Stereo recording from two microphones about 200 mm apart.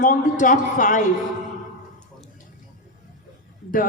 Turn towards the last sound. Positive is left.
turn(degrees=45)  # may be behind; listen again after turning